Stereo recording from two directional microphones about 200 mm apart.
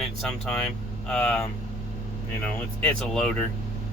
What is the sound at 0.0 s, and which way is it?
Speech, centre (ahead or behind).